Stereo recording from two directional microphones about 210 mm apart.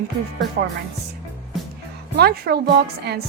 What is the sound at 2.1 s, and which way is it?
A woman's voice, 50° right (ahead or behind).